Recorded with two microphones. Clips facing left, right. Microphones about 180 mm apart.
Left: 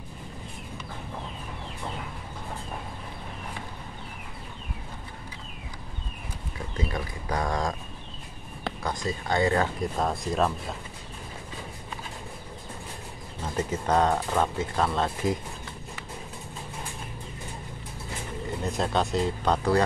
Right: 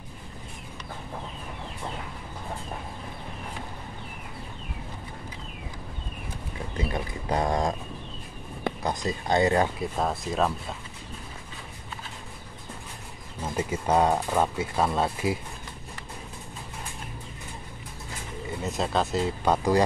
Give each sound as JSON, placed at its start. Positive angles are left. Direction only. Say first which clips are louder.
{"t": 6.9, "sound": "speech", "louder": "right 2 dB", "side_deg": -25}
{"t": 8.8, "sound": "speech", "louder": "even", "side_deg": -20}
{"t": 9.8, "sound": "speech", "louder": "even", "side_deg": -5}
{"t": 13.6, "sound": "speech", "louder": "right 1 dB", "side_deg": -10}
{"t": 18.6, "sound": "speech", "louder": "even", "side_deg": 0}